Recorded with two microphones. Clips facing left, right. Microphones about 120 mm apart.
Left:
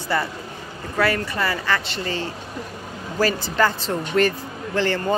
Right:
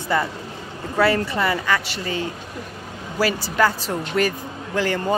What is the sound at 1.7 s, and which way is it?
Speech, 10° right (ahead or behind).